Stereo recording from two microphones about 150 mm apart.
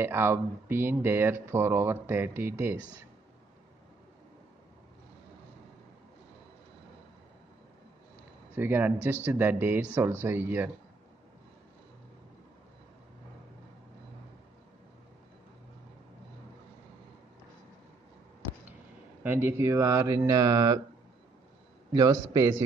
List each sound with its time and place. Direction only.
0.0 s speech: 15° right (ahead or behind)
8.5 s speech: 15° right (ahead or behind)
19.2 s speech: 15° right (ahead or behind)
21.9 s speech: 25° right (ahead or behind)